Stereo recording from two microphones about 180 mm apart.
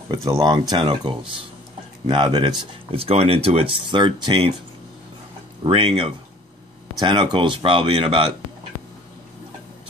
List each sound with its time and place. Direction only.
0.1 s speech: 20° right (ahead or behind)
5.6 s speech: 30° right (ahead or behind)